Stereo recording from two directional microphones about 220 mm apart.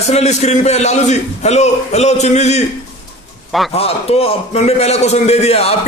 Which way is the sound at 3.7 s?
25° left (ahead or behind).